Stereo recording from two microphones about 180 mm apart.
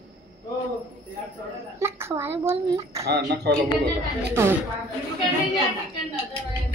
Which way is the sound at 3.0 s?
70° right (ahead or behind).